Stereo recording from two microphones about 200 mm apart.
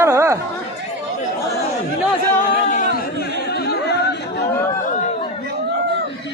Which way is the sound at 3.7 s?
55° left (ahead or behind).